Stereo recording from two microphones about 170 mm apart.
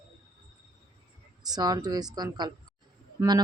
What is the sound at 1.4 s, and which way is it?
A man's voice, 25° right (ahead or behind).